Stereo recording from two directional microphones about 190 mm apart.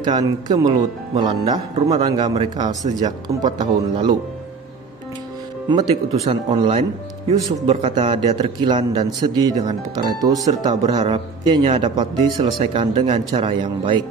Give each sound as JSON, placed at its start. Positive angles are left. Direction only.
{"t": 0.0, "sound": "speech", "side_deg": -20}
{"t": 5.7, "sound": "speech", "side_deg": -20}
{"t": 6.2, "sound": "speech", "side_deg": -35}
{"t": 8.1, "sound": "speech", "side_deg": -25}